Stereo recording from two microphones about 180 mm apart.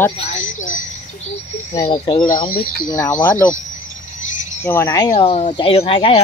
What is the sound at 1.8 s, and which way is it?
Speech, 25° left (ahead or behind).